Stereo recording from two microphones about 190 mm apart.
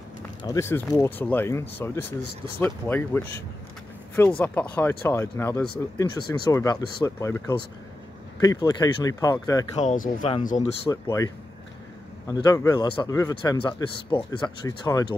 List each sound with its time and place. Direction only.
0.4 s a man's voice: 15° left (ahead or behind)
9.8 s speech: 40° left (ahead or behind)
10.9 s a man's voice: 15° left (ahead or behind)